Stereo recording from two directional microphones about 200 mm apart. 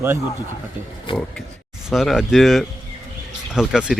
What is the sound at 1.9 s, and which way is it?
Speech, centre (ahead or behind).